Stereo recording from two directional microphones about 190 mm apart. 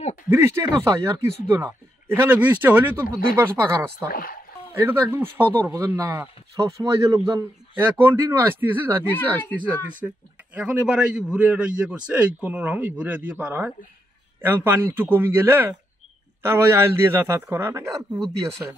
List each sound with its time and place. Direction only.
0.3 s speech: 10° right (ahead or behind)
4.1 s speech: 50° left (ahead or behind)
4.7 s speech: 10° right (ahead or behind)
9.1 s speech: 10° left (ahead or behind)
10.0 s speech: 10° right (ahead or behind)